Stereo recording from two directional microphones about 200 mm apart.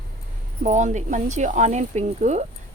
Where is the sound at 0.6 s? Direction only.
35° right (ahead or behind).